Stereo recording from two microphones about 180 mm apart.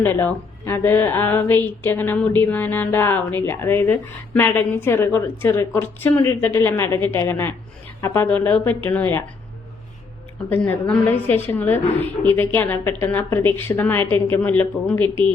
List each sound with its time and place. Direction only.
0.0 s a woman's voice: 10° left (ahead or behind)
10.5 s a woman's voice: 10° left (ahead or behind)